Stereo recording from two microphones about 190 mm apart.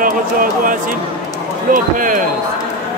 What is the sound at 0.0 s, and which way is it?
Speech, 45° right (ahead or behind).